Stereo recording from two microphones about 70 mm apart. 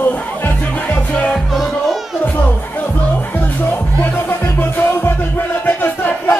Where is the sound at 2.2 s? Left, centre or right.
Left.